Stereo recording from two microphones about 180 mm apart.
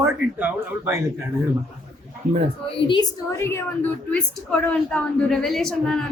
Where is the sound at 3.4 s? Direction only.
15° left (ahead or behind).